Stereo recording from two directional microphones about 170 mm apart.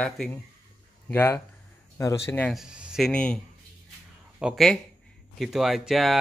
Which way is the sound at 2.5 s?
5° right (ahead or behind).